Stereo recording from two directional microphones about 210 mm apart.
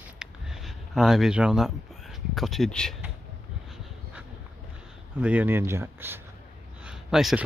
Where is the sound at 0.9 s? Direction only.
Centre (ahead or behind).